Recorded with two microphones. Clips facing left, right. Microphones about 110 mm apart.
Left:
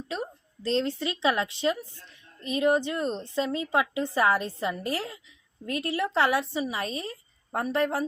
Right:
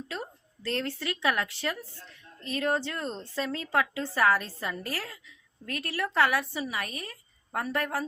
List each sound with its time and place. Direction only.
0.1 s a woman's voice: 20° left (ahead or behind)